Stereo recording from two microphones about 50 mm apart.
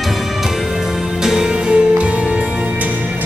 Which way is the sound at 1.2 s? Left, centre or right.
Centre.